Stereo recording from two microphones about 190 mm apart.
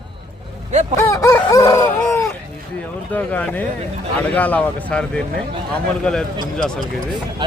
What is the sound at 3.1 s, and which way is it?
Speech, 10° left (ahead or behind).